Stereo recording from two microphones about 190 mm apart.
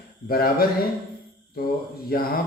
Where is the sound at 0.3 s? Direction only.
50° left (ahead or behind).